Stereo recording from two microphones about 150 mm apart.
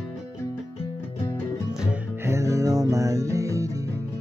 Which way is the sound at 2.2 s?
20° right (ahead or behind).